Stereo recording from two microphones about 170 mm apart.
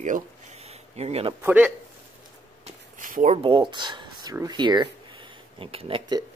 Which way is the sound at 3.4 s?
30° right (ahead or behind).